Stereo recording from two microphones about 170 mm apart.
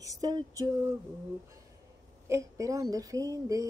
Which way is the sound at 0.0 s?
20° right (ahead or behind).